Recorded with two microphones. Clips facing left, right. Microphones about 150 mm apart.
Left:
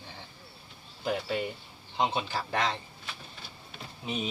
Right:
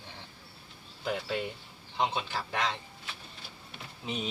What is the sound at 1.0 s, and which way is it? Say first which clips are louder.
Speech: left 2 dB; 20° left (ahead or behind).